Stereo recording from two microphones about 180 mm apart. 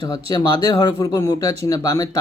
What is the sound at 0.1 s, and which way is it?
Speech, 25° left (ahead or behind).